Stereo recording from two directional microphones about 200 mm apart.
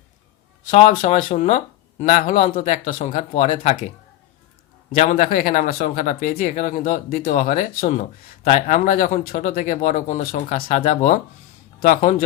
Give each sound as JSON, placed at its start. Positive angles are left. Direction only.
{"t": 0.7, "sound": "speech", "side_deg": 35}